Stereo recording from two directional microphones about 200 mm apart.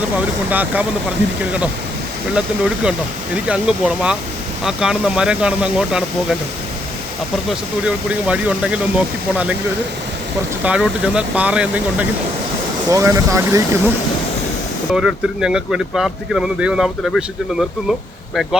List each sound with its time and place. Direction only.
0.2 s speech: 10° right (ahead or behind)
7.9 s speech: 5° right (ahead or behind)
10.6 s speech: 5° right (ahead or behind)
14.9 s speech: 5° right (ahead or behind)